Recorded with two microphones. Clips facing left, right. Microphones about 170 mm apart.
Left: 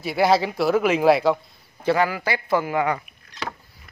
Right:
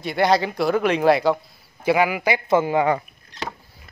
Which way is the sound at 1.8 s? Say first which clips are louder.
Right 2 dB; 10° right (ahead or behind).